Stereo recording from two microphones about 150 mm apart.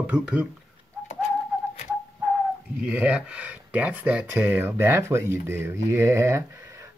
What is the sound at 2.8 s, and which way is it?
Speech, 10° right (ahead or behind).